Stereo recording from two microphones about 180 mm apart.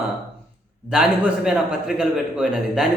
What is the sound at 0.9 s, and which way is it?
A man's voice, 5° right (ahead or behind).